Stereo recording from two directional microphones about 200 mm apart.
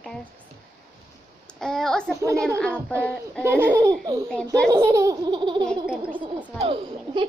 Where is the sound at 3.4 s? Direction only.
10° right (ahead or behind).